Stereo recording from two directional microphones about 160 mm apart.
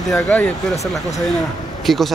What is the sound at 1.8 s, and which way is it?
Speech, centre (ahead or behind).